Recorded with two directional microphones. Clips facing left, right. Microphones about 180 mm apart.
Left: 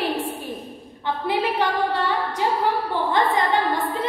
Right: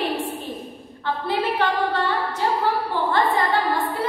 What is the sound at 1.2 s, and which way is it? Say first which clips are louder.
Speech: left 1 dB; 15° left (ahead or behind).